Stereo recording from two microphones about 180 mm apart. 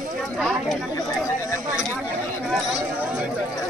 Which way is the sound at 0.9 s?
15° left (ahead or behind).